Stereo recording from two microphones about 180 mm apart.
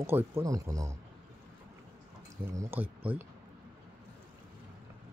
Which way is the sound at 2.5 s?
15° right (ahead or behind).